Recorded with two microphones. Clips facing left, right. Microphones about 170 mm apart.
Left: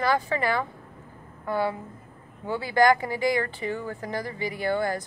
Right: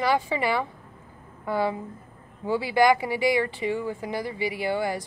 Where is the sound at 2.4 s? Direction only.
10° right (ahead or behind).